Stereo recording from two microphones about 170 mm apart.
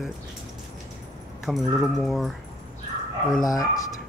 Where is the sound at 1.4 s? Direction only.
Centre (ahead or behind).